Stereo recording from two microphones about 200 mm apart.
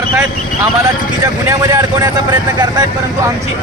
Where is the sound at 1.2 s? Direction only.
20° right (ahead or behind).